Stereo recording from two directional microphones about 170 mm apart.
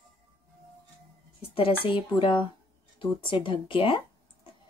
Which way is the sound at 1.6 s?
30° left (ahead or behind).